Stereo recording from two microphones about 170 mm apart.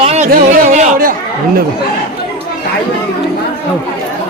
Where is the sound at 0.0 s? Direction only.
40° right (ahead or behind).